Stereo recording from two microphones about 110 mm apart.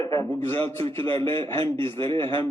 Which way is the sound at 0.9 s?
20° left (ahead or behind).